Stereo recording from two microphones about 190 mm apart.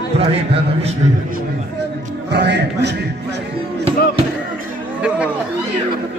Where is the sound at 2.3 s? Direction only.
65° right (ahead or behind).